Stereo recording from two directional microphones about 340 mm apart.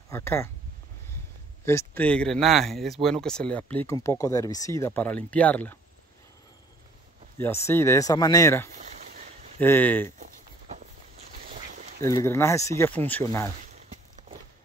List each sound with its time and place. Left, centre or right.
0.1 s speech: centre
1.7 s speech: centre
7.3 s speech: centre
8.9 s a sound: right
9.6 s speech: centre
10.1 s walk: right
12.0 s speech: centre
13.6 s a sound: right